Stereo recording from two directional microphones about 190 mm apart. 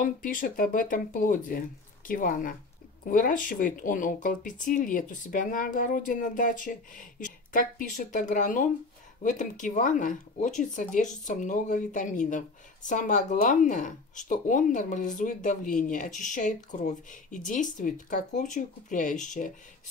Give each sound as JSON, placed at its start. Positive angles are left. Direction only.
{"t": 0.0, "sound": "speech", "side_deg": 45}